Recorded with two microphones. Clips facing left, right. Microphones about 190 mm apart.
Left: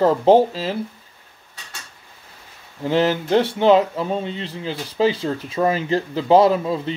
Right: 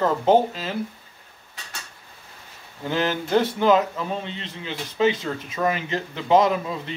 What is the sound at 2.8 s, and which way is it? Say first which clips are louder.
Speech: left 6 dB; 30° left (ahead or behind).